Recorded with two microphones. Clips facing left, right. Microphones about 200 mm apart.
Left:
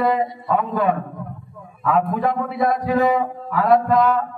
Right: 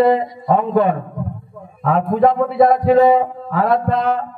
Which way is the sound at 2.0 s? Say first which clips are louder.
Right 7 dB; 30° right (ahead or behind).